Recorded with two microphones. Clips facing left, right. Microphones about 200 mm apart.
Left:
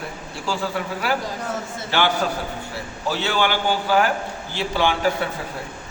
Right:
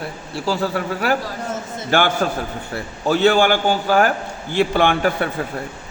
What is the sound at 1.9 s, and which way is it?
Speech, 50° right (ahead or behind).